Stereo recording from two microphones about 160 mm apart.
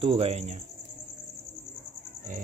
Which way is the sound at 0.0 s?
35° right (ahead or behind).